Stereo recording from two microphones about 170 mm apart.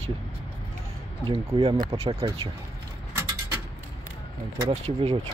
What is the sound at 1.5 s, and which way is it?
Speech, 35° right (ahead or behind).